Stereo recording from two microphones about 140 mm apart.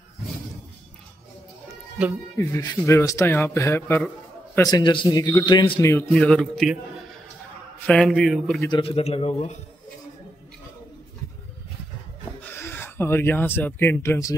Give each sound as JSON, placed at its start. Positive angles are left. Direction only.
{"t": 2.3, "sound": "a man's voice", "side_deg": 25}
{"t": 4.6, "sound": "a man's voice", "side_deg": 30}
{"t": 5.8, "sound": "a man's voice", "side_deg": 20}
{"t": 6.1, "sound": "a man's voice", "side_deg": 5}
{"t": 7.8, "sound": "a man's voice", "side_deg": 5}
{"t": 8.7, "sound": "a man's voice", "side_deg": 40}
{"t": 12.4, "sound": "speech", "side_deg": 15}